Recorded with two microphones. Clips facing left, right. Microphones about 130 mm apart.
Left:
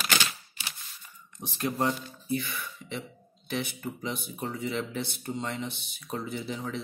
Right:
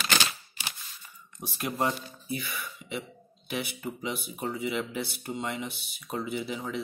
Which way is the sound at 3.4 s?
10° right (ahead or behind).